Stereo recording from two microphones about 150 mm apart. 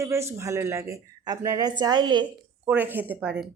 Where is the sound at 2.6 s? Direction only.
15° right (ahead or behind).